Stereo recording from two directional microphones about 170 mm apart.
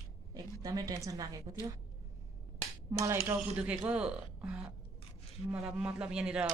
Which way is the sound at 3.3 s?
10° right (ahead or behind).